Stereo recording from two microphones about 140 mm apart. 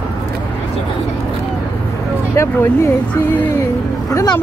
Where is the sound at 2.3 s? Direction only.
20° left (ahead or behind).